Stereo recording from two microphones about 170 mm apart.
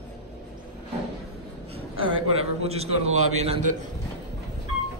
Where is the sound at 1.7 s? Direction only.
35° right (ahead or behind).